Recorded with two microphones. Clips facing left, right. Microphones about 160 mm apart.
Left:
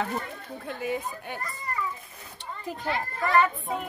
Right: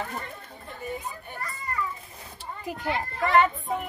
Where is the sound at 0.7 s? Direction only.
90° left.